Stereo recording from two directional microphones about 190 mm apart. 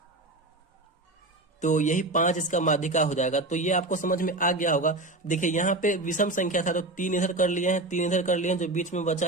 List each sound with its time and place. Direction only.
1.6 s a man's voice: 40° left (ahead or behind)